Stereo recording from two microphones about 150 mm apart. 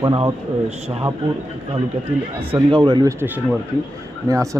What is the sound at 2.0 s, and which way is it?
A man's voice, 40° right (ahead or behind).